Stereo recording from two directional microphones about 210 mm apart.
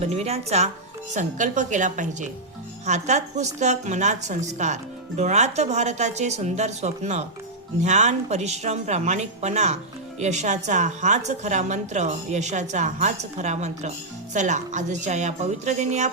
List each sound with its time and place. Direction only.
0.0 s a woman's voice: 30° right (ahead or behind)